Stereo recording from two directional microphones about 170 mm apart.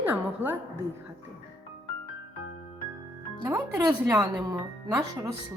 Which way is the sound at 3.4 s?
10° right (ahead or behind).